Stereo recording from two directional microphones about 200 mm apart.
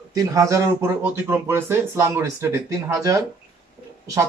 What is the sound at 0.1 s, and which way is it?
Speech, 15° right (ahead or behind).